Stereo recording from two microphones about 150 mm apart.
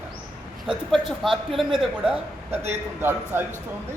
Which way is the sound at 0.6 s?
Centre (ahead or behind).